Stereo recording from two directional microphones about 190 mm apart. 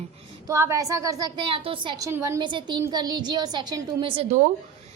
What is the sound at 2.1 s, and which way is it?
A woman's voice, 15° right (ahead or behind).